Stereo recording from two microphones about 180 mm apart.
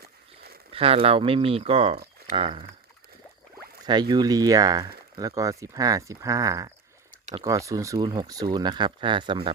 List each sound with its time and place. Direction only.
0.7 s speech: 30° right (ahead or behind)
3.8 s speech: 25° right (ahead or behind)